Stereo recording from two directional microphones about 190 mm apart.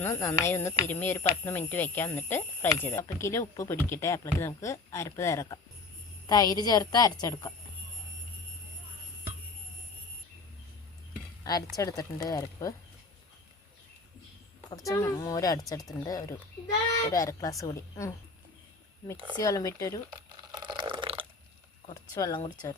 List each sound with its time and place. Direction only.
0.0 s a woman's voice: 15° left (ahead or behind)
11.5 s a woman's voice: 20° left (ahead or behind)
14.8 s a woman's voice: 15° left (ahead or behind)
19.1 s speech: 25° right (ahead or behind)
19.4 s speech: 15° left (ahead or behind)
20.1 s a sound: 20° right (ahead or behind)
22.1 s a woman's voice: 20° left (ahead or behind)